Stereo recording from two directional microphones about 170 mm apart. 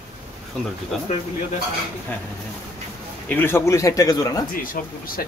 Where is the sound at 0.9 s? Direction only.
Centre (ahead or behind).